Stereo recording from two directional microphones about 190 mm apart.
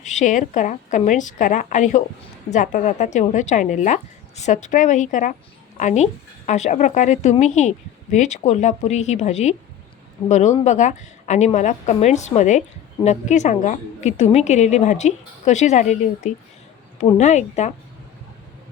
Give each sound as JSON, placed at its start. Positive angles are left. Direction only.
{"t": 0.0, "sound": "a woman's voice", "side_deg": 40}